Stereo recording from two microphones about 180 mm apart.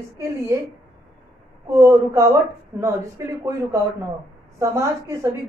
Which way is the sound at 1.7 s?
15° right (ahead or behind).